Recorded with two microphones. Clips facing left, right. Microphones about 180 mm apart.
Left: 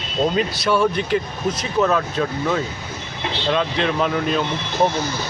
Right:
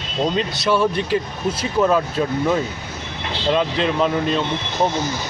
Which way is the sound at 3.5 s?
5° right (ahead or behind).